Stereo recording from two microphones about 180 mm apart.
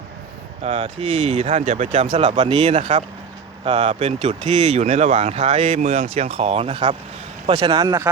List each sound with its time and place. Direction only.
0.6 s speech: 35° right (ahead or behind)
7.5 s speech: 20° right (ahead or behind)